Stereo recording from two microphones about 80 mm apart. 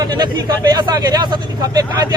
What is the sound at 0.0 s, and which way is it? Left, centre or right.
Speech, right.